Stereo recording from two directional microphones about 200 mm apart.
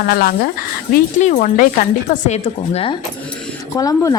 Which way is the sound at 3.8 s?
15° left (ahead or behind).